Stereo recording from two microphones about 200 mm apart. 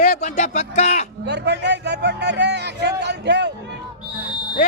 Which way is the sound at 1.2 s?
55° right (ahead or behind).